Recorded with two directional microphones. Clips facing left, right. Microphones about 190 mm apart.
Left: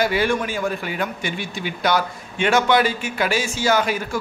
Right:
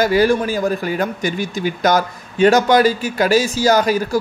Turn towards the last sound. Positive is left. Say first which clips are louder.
# right 5 dB
turn(degrees=-40)  # may be behind; listen again after turning